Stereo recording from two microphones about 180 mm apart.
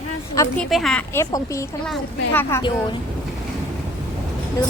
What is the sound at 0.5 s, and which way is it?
A woman's voice, 5° left (ahead or behind).